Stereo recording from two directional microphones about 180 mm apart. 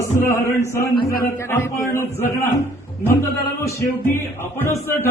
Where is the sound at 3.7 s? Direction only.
15° left (ahead or behind).